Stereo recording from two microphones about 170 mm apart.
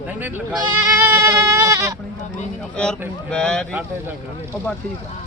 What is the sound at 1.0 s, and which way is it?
Goat, 15° right (ahead or behind).